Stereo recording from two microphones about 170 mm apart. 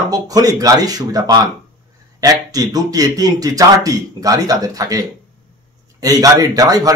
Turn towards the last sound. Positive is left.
turn(degrees=-20)  # may be behind; listen again after turning